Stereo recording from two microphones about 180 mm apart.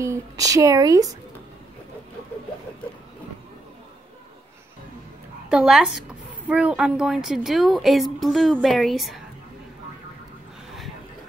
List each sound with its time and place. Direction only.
0.0 s speech: 15° right (ahead or behind)
5.5 s a woman's voice: 5° right (ahead or behind)